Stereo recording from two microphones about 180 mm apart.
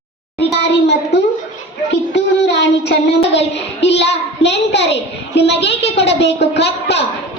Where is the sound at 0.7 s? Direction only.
75° left (ahead or behind).